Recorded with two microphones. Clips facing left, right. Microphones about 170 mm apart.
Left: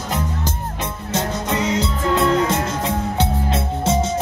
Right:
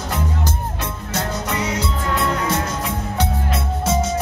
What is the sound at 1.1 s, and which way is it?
Music, 20° left (ahead or behind).